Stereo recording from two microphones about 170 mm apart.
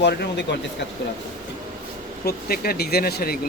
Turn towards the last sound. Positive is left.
turn(degrees=65)  # may be behind; listen again after turning